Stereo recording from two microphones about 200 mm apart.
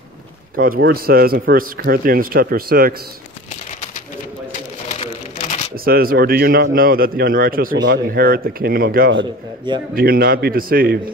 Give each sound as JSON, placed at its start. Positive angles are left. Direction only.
{"t": 0.7, "sound": "a man's voice", "side_deg": -50}
{"t": 4.8, "sound": "a sound", "side_deg": 35}
{"t": 5.9, "sound": "a man's voice", "side_deg": -50}